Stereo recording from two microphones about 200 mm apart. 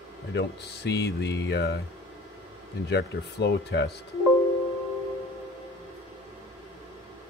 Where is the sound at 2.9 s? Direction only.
60° left (ahead or behind).